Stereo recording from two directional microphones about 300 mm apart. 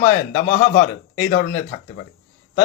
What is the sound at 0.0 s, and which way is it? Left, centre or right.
Speech, left.